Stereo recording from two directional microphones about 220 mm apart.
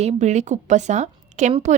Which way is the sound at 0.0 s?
30° right (ahead or behind).